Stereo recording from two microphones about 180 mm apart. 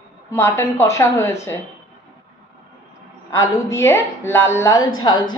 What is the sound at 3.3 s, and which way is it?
A woman's voice, 15° left (ahead or behind).